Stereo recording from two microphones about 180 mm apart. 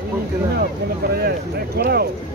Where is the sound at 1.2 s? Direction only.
60° right (ahead or behind).